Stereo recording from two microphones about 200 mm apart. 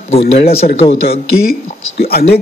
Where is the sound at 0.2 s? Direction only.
50° left (ahead or behind).